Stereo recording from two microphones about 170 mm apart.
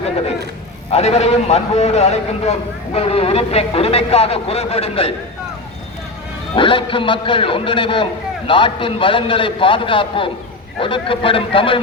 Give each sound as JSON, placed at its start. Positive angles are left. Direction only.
{"t": 0.9, "sound": "a man's voice", "side_deg": 40}
{"t": 6.6, "sound": "a man's voice", "side_deg": 30}